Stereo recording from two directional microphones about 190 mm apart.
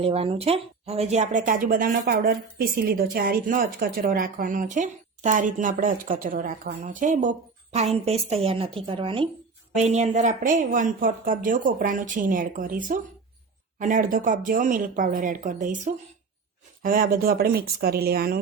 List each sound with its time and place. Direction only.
0.0 s speech: 30° right (ahead or behind); by 18.3 s 55° right (ahead or behind)